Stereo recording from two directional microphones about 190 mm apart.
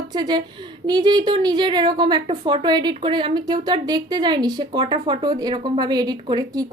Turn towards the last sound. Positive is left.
turn(degrees=-20)  # may be behind; listen again after turning